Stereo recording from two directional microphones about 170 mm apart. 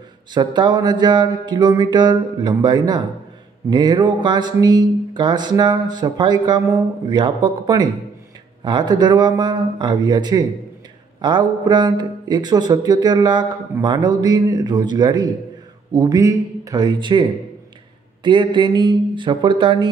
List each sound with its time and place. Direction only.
0.3 s speech: 25° right (ahead or behind)